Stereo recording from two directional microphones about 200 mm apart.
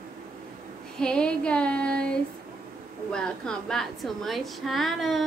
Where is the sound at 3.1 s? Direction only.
5° left (ahead or behind).